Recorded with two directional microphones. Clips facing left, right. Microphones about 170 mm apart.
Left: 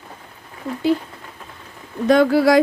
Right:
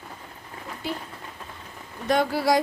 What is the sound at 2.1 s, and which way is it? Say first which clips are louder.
Speech: left 8 dB; 90° left.